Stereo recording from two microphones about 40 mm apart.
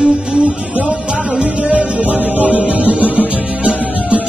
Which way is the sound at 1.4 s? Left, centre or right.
Right.